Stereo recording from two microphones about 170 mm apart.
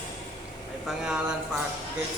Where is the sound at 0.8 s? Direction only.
5° right (ahead or behind).